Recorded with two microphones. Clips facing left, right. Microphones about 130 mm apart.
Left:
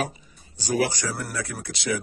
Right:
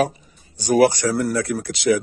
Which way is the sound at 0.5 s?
60° right (ahead or behind).